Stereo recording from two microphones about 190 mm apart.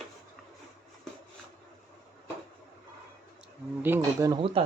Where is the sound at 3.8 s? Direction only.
15° right (ahead or behind).